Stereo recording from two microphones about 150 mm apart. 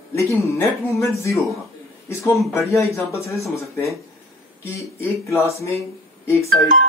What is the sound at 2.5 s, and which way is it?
Speech, 20° left (ahead or behind).